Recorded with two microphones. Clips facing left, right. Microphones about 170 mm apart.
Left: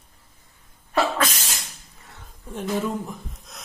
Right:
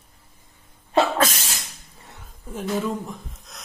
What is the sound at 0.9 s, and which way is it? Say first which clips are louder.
Sneeze: right 3 dB; 20° right (ahead or behind).